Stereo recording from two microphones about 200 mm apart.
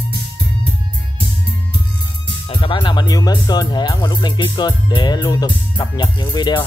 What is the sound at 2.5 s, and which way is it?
Speech, 25° left (ahead or behind).